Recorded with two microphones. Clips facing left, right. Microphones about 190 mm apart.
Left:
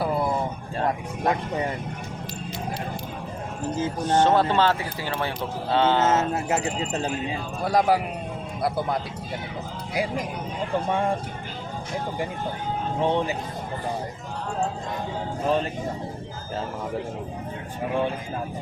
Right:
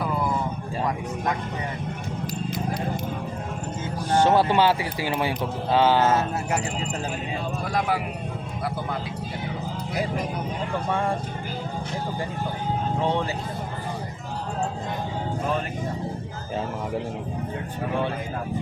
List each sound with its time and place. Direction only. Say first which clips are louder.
4.0 s speech: right 1 dB; 10° right (ahead or behind)
6.0 s speech: even; 25° left (ahead or behind)
7.6 s a man's voice: left 6 dB; 35° left (ahead or behind)
13.1 s speech: left 3 dB; 20° left (ahead or behind)